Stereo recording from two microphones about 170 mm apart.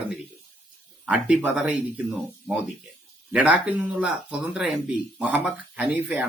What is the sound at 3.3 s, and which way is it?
Speech, 10° right (ahead or behind).